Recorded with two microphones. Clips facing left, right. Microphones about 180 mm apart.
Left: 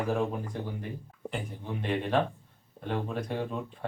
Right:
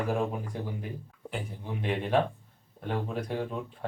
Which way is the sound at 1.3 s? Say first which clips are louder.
Left 1 dB; 10° right (ahead or behind).